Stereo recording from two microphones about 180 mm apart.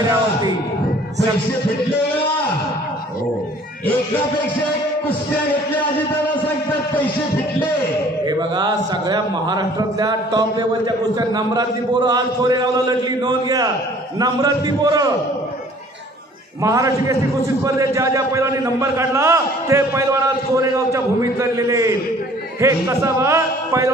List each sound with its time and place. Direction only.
8.3 s a man's voice: 25° right (ahead or behind)
16.6 s a man's voice: 15° right (ahead or behind)